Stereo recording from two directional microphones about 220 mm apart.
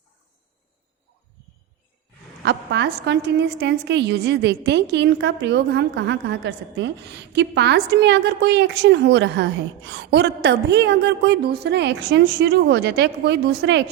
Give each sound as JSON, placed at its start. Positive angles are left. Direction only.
{"t": 2.4, "sound": "a woman's voice", "side_deg": -50}